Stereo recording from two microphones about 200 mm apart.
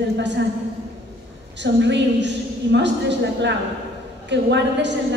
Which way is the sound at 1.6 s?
60° right (ahead or behind).